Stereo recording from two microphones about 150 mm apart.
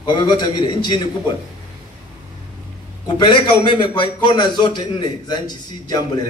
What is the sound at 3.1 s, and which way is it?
A man's voice, 30° left (ahead or behind).